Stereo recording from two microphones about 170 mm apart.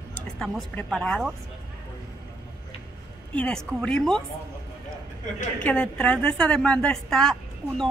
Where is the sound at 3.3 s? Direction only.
5° left (ahead or behind).